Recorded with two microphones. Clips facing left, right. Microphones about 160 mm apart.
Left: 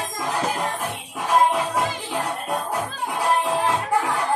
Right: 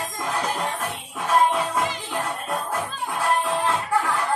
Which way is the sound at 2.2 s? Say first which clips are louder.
Left 2 dB; 20° left (ahead or behind).